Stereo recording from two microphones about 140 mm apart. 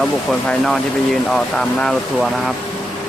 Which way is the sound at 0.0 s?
5° left (ahead or behind).